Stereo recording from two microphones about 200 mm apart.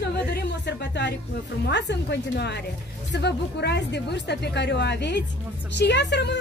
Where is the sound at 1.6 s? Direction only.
60° left (ahead or behind).